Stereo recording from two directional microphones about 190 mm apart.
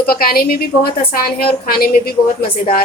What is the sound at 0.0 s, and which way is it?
A woman's voice, 50° left (ahead or behind).